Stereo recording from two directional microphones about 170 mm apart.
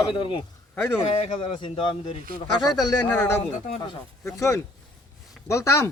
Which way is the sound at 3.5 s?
45° left (ahead or behind).